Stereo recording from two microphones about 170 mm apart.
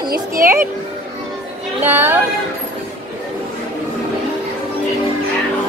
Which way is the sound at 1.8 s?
10° right (ahead or behind).